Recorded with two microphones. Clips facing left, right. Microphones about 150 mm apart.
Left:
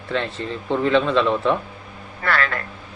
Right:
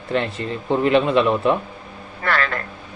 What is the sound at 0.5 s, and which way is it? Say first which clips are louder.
Speech: right 2 dB; 15° right (ahead or behind).